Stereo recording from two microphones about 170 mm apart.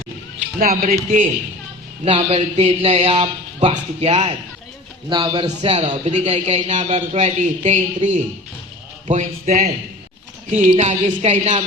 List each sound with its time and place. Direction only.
0.6 s speech: 55° right (ahead or behind)
2.0 s a man's voice: 40° right (ahead or behind)
5.0 s a man's voice: 25° right (ahead or behind)